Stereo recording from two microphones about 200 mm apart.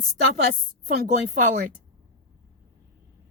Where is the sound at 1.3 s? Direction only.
40° right (ahead or behind).